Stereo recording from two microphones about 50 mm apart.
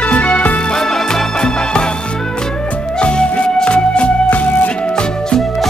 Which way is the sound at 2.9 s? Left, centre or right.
Left.